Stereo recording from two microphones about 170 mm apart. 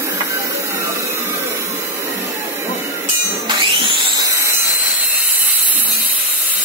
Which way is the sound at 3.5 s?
30° right (ahead or behind).